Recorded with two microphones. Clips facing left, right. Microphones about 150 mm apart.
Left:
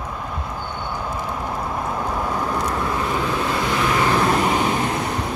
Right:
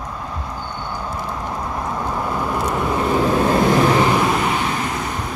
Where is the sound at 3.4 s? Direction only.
40° right (ahead or behind).